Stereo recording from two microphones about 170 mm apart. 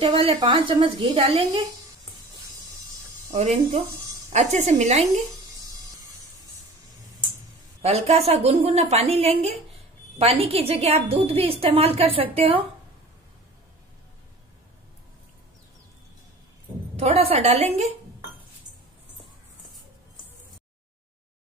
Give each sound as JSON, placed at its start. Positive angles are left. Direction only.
{"t": 0.0, "sound": "a woman's voice", "side_deg": -35}
{"t": 3.3, "sound": "a woman's voice", "side_deg": -45}
{"t": 7.8, "sound": "a woman's voice", "side_deg": -40}
{"t": 16.9, "sound": "a woman's voice", "side_deg": -35}